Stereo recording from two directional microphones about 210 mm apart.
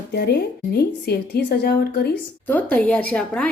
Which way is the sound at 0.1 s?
50° left (ahead or behind).